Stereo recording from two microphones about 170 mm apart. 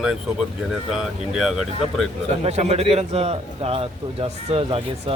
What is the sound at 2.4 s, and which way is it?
A man's voice, 40° right (ahead or behind).